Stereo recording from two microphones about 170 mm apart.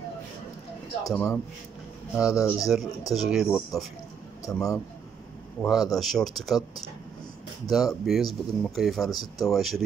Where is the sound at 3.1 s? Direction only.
Centre (ahead or behind).